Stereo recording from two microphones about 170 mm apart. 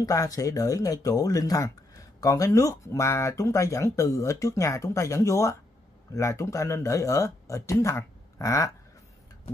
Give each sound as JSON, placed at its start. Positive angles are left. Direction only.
{"t": 0.0, "sound": "speech", "side_deg": 20}